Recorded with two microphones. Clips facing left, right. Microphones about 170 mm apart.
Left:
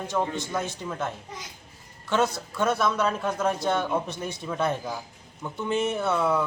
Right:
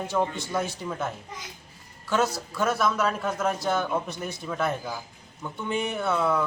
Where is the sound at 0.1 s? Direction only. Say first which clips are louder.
Right 1 dB; centre (ahead or behind).